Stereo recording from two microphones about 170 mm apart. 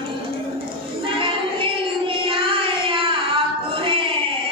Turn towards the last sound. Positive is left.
turn(degrees=-30)  # may be behind; listen again after turning